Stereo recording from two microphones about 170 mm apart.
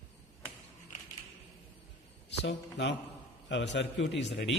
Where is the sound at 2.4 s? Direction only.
90° left.